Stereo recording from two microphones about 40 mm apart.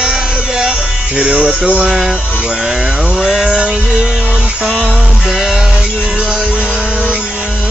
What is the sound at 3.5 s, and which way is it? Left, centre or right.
Music, right.